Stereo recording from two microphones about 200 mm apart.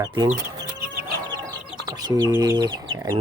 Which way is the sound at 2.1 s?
20° right (ahead or behind).